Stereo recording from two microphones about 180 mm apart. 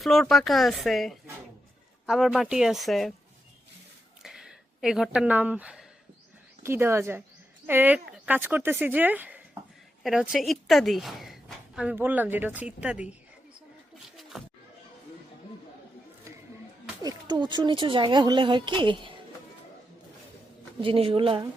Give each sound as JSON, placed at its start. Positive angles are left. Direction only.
{"t": 0.0, "sound": "a woman's voice", "side_deg": 0}
{"t": 4.2, "sound": "a sound", "side_deg": -5}
{"t": 6.6, "sound": "a woman's voice", "side_deg": -15}
{"t": 17.0, "sound": "speech", "side_deg": -20}
{"t": 20.8, "sound": "speech", "side_deg": -30}